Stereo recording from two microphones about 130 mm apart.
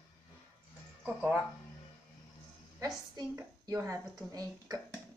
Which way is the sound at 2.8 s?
30° right (ahead or behind).